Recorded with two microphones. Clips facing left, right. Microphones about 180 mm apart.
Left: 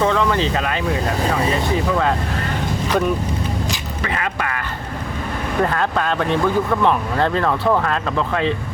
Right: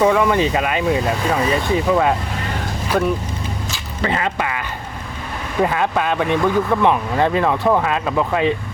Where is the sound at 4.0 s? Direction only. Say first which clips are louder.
Right 5 dB; 30° right (ahead or behind).